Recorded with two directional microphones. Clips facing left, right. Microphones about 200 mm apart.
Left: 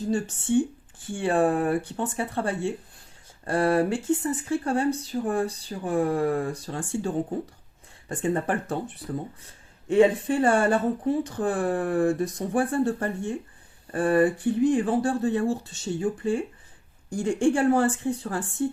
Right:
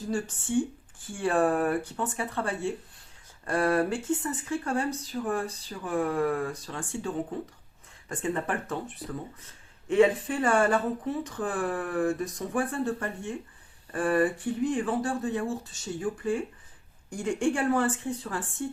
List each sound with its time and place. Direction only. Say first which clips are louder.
1.1 s speech: left 2 dB; 30° left (ahead or behind)